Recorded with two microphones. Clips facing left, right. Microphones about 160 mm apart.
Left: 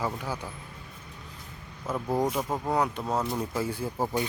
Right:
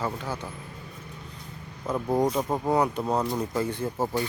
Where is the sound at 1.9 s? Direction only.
10° right (ahead or behind).